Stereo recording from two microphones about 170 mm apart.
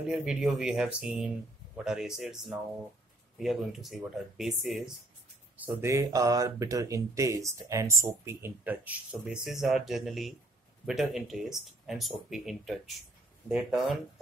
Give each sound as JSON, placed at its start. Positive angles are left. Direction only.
{"t": 0.1, "sound": "speech", "side_deg": -5}
{"t": 5.6, "sound": "speech", "side_deg": -15}